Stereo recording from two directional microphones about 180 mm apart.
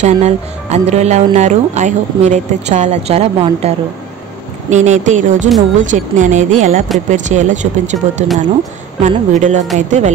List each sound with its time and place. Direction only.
0.0 s speech: 40° right (ahead or behind)